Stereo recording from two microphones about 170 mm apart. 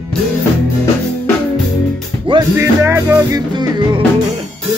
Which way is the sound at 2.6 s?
15° right (ahead or behind).